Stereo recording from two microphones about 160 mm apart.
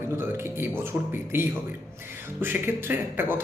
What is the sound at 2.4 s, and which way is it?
Speech, 15° right (ahead or behind).